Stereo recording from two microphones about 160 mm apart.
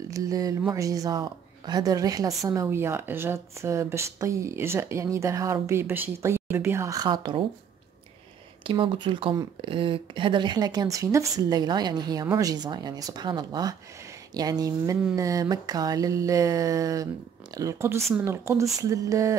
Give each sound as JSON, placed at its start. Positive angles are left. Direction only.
{"t": 0.1, "sound": "a woman's voice", "side_deg": -20}
{"t": 8.6, "sound": "a woman's voice", "side_deg": -30}